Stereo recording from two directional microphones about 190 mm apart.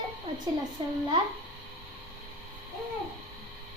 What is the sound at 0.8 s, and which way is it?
Speech, 25° right (ahead or behind).